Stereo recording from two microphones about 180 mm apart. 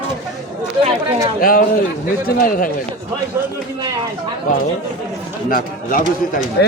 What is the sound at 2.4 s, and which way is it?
Speech, 50° left (ahead or behind).